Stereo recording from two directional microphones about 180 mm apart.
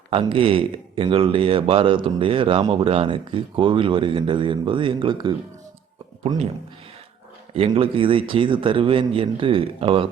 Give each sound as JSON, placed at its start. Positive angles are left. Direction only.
{"t": 0.1, "sound": "speech", "side_deg": -30}
{"t": 7.5, "sound": "speech", "side_deg": -35}